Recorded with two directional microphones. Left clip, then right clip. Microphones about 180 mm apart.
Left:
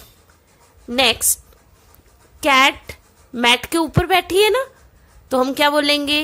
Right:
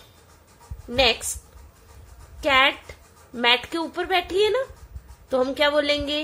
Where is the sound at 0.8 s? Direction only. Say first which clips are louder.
Left 4 dB; 45° left (ahead or behind).